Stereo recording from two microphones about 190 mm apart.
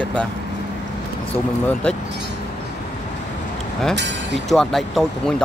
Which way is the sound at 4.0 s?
65° right (ahead or behind).